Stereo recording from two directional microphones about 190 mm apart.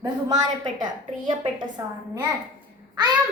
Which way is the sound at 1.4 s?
25° right (ahead or behind).